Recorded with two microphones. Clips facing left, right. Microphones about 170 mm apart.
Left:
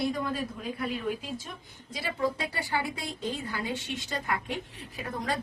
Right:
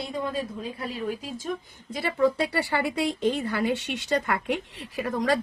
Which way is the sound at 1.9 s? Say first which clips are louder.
Right 7 dB; 60° right (ahead or behind).